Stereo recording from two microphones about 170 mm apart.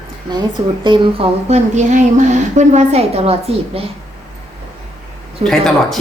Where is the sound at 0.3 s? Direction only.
25° right (ahead or behind).